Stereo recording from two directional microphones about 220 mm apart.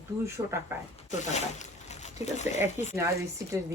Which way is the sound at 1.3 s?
30° left (ahead or behind).